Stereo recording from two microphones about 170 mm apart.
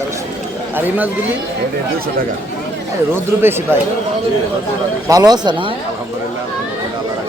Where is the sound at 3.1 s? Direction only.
15° right (ahead or behind).